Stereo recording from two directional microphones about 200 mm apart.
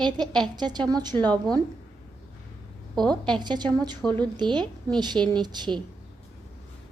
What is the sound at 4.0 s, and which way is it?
Speech, 5° left (ahead or behind).